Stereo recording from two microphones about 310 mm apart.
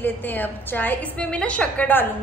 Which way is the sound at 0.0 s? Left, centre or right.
Centre.